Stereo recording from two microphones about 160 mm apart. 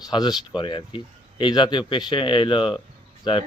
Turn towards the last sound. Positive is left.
turn(degrees=30)  # may be behind; listen again after turning